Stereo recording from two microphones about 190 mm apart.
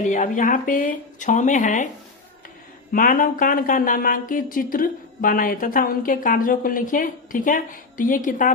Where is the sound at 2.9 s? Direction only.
45° left (ahead or behind).